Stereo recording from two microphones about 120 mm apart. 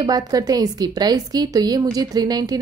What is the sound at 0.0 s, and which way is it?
A woman's voice, 30° right (ahead or behind).